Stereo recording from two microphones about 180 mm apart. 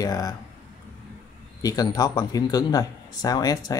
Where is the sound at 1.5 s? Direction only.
20° left (ahead or behind).